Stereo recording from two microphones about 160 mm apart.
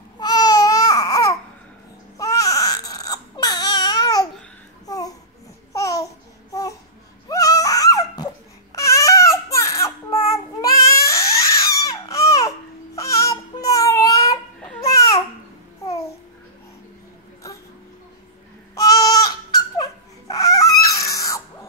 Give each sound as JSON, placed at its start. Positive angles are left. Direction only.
{"t": 0.2, "sound": "baby cry", "side_deg": 25}
{"t": 4.8, "sound": "babbling", "side_deg": 25}
{"t": 7.2, "sound": "a sound", "side_deg": 20}
{"t": 8.7, "sound": "baby cry", "side_deg": 20}
{"t": 18.8, "sound": "baby cry", "side_deg": 20}